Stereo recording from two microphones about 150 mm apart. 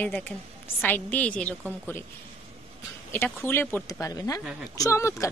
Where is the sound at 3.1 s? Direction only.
15° left (ahead or behind).